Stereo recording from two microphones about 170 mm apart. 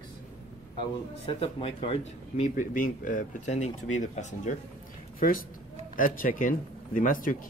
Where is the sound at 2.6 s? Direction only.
50° left (ahead or behind).